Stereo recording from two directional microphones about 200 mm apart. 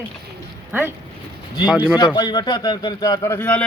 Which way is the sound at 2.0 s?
20° left (ahead or behind).